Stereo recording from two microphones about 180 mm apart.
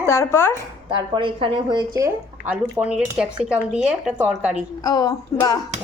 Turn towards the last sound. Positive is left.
turn(degrees=20)  # may be behind; listen again after turning